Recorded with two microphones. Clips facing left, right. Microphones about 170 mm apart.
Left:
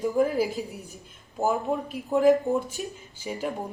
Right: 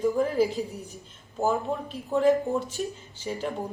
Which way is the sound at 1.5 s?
Centre (ahead or behind).